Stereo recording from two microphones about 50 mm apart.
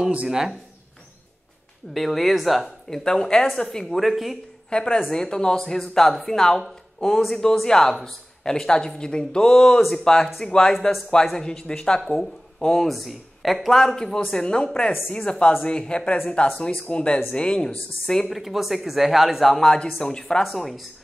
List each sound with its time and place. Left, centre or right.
0.3 s speech: centre
2.0 s speech: centre
3.0 s speech: centre
3.9 s speech: centre
4.6 s speech: centre
9.8 s speech: centre
10.0 s speech: centre
12.9 s speech: centre
18.3 s speech: centre
20.4 s speech: centre